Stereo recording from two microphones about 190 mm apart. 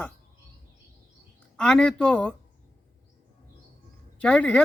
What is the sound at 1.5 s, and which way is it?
Speech, 5° left (ahead or behind).